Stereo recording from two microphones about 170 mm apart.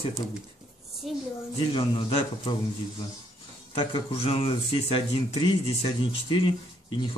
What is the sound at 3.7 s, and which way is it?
Speech, 30° left (ahead or behind).